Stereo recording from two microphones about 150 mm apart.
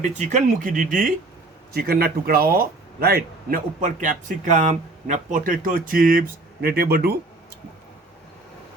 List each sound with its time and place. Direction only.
0.3 s speech: 55° right (ahead or behind)
1.7 s speech: 90° right